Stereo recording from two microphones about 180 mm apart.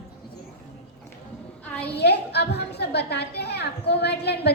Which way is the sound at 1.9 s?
65° left (ahead or behind).